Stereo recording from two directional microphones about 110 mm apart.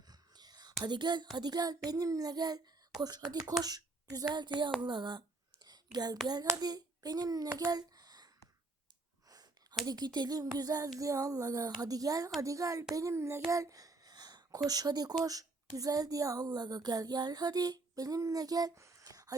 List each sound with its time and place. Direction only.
0.1 s whispering: 40° right (ahead or behind)
0.9 s a child's voice: 40° right (ahead or behind)
5.6 s whispering: 40° right (ahead or behind)
6.2 s a child's voice: 35° right (ahead or behind)
9.3 s a sound: 40° right (ahead or behind)
9.8 s a child's voice: 35° right (ahead or behind)